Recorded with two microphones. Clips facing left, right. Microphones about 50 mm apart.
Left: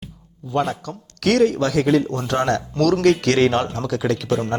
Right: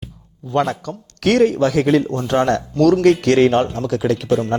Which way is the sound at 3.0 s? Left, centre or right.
Centre.